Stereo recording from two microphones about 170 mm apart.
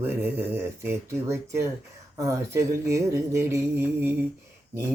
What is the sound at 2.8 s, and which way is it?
Speech, 15° right (ahead or behind).